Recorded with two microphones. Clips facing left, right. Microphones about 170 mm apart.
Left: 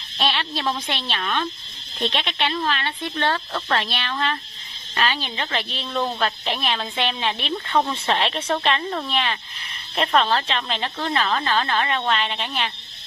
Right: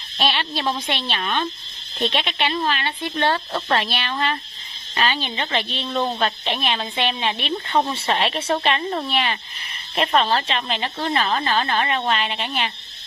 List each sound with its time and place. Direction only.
0.2 s a woman's voice: centre (ahead or behind)
5.9 s speech: 20° right (ahead or behind)
6.2 s a woman's voice: centre (ahead or behind)